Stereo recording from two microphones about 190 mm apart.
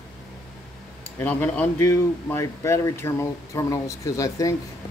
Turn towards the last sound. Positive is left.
turn(degrees=20)  # may be behind; listen again after turning